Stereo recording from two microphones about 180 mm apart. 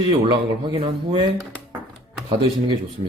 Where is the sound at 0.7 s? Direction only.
30° right (ahead or behind).